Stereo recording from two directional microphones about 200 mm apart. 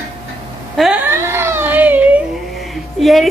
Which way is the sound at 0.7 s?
5° right (ahead or behind).